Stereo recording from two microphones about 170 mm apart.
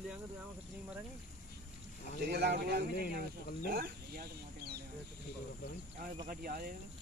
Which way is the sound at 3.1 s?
60° right (ahead or behind).